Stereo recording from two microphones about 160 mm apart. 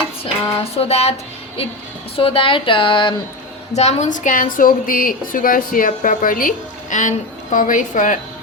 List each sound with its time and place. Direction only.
0.6 s speech: 40° left (ahead or behind)
2.1 s speech: 35° left (ahead or behind)
3.8 s a woman's voice: 40° left (ahead or behind)